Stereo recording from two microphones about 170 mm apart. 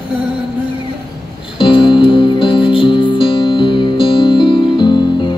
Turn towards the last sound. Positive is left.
turn(degrees=25)  # may be behind; listen again after turning